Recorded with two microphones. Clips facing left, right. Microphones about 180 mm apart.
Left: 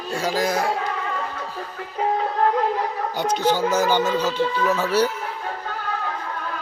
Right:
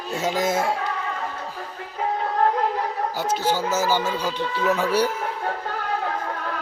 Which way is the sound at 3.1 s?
5° right (ahead or behind).